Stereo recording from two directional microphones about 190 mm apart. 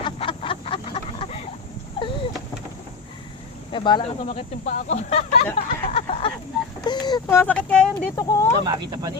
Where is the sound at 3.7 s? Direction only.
25° left (ahead or behind).